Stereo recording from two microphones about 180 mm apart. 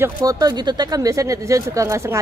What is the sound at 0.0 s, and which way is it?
Speech, 20° right (ahead or behind).